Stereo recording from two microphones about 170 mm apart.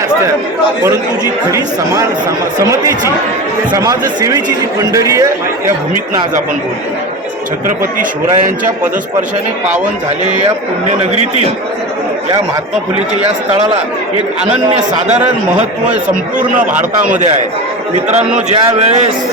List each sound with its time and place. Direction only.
0.9 s speech: 20° right (ahead or behind)
3.7 s speech: 20° right (ahead or behind)
7.8 s a man's voice: 50° right (ahead or behind)
10.8 s speech: 40° right (ahead or behind)
17.0 s a man's voice: 50° right (ahead or behind)
18.3 s a man's voice: 40° right (ahead or behind)